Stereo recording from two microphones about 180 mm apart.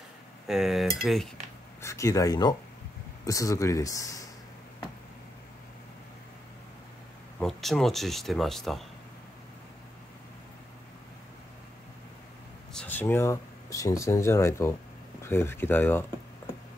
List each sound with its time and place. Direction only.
0.5 s speech: centre (ahead or behind)
1.8 s speech: 15° left (ahead or behind)
7.3 s speech: centre (ahead or behind)
12.7 s speech: 10° left (ahead or behind)